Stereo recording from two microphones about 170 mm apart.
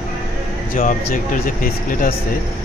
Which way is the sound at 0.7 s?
55° left (ahead or behind).